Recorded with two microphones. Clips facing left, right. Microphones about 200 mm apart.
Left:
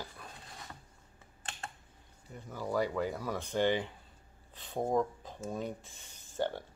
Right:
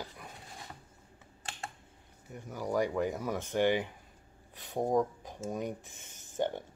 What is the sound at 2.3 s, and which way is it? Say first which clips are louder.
Speech: right 2 dB; 15° right (ahead or behind).